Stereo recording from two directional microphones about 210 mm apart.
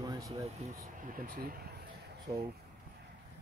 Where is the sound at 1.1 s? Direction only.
40° right (ahead or behind).